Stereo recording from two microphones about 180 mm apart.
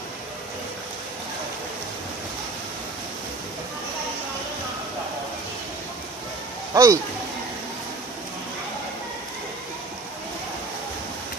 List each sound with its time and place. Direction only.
6.7 s speech: 20° right (ahead or behind)